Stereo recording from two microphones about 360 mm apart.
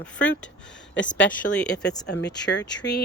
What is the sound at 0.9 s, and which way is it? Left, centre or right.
Speech, left.